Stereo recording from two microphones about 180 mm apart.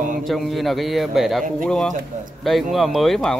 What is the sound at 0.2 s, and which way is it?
Speech, centre (ahead or behind).